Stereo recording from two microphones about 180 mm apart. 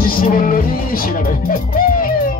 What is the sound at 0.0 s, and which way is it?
Speech, 50° left (ahead or behind).